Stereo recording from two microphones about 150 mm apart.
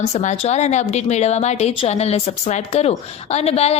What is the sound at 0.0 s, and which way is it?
A woman's voice, 50° left (ahead or behind).